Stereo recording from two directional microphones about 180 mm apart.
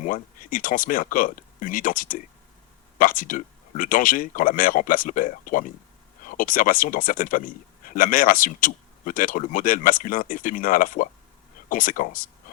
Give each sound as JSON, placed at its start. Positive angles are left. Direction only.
{"t": 0.0, "sound": "speech", "side_deg": 50}